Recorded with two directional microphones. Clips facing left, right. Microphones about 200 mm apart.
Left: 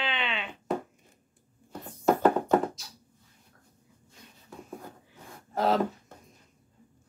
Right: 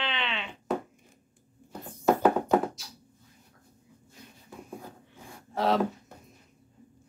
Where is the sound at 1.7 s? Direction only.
5° right (ahead or behind).